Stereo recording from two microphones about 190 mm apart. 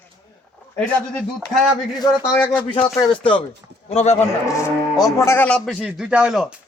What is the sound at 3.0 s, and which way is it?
A man's voice, 25° left (ahead or behind).